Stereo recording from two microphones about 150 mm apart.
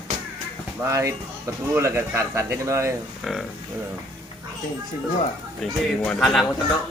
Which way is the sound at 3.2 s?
Centre (ahead or behind).